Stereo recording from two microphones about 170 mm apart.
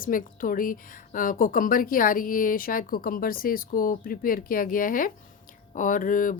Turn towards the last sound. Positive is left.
turn(degrees=50)  # may be behind; listen again after turning